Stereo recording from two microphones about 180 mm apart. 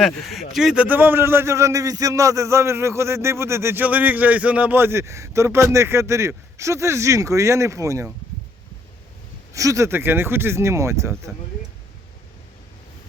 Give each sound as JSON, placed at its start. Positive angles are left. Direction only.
{"t": 0.0, "sound": "a man's voice", "side_deg": 0}
{"t": 9.5, "sound": "a man's voice", "side_deg": -20}